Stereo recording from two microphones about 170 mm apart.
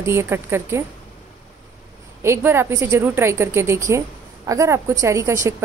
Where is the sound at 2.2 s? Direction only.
15° right (ahead or behind).